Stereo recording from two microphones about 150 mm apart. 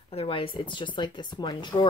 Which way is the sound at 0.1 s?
40° left (ahead or behind).